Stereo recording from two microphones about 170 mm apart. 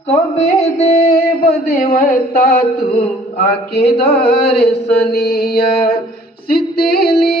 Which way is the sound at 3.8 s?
75° left (ahead or behind).